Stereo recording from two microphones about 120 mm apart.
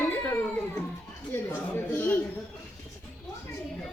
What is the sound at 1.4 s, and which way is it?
Speech, 15° left (ahead or behind).